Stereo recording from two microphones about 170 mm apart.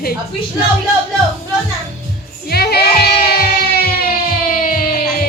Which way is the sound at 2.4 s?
70° left (ahead or behind).